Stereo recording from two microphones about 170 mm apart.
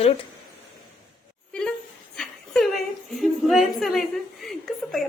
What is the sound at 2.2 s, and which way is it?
A woman's voice, 5° left (ahead or behind).